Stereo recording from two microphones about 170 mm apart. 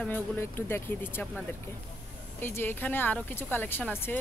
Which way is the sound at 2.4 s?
15° left (ahead or behind).